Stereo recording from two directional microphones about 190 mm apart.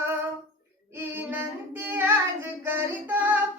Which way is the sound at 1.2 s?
10° right (ahead or behind).